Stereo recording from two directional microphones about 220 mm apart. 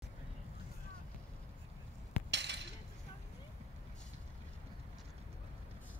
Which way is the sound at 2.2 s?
50° right (ahead or behind).